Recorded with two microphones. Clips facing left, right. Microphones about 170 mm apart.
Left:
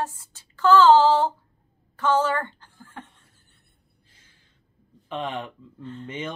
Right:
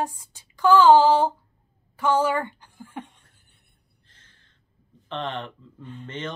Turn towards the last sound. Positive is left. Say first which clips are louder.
# left 1 dB
turn(degrees=10)  # may be behind; listen again after turning